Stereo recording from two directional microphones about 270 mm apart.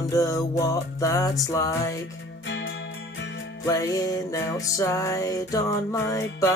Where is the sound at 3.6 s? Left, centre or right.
Centre.